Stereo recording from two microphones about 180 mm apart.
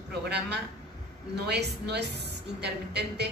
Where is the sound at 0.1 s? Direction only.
65° right (ahead or behind).